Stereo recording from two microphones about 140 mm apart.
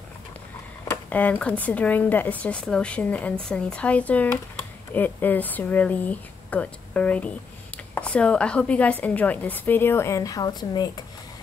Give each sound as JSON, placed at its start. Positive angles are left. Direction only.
{"t": 0.8, "sound": "speech", "side_deg": 10}